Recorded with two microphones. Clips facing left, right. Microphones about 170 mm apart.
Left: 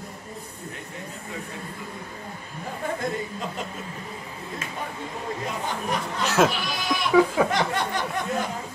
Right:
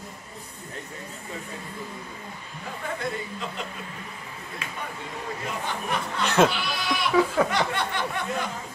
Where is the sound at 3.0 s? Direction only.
45° left (ahead or behind).